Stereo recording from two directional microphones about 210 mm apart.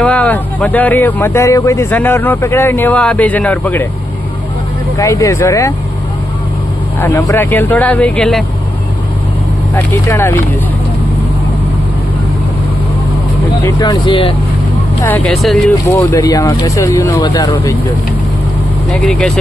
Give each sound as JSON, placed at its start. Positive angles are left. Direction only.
{"t": 0.0, "sound": "a man's voice", "side_deg": 5}
{"t": 4.9, "sound": "a man's voice", "side_deg": 15}
{"t": 7.0, "sound": "a man's voice", "side_deg": 15}
{"t": 9.8, "sound": "a man's voice", "side_deg": 10}
{"t": 13.7, "sound": "speech", "side_deg": 15}
{"t": 15.0, "sound": "a man's voice", "side_deg": 0}
{"t": 18.9, "sound": "speech", "side_deg": 0}